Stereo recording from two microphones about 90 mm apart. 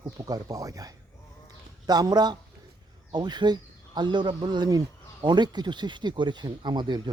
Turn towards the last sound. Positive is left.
turn(degrees=-55)  # may be behind; listen again after turning